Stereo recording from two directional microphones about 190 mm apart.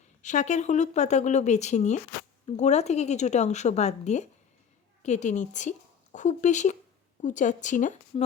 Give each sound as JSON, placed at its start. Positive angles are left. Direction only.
{"t": 0.2, "sound": "a woman's voice", "side_deg": 40}